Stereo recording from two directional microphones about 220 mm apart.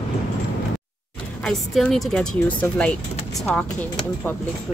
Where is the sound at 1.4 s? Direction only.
Centre (ahead or behind).